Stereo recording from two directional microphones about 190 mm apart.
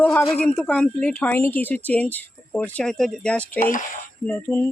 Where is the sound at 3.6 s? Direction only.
40° left (ahead or behind).